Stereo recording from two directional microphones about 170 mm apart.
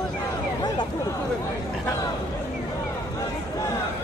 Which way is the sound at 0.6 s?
25° left (ahead or behind).